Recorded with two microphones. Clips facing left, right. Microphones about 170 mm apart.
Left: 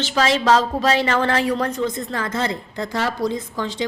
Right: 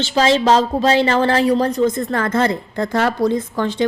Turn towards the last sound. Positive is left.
turn(degrees=-55)  # may be behind; listen again after turning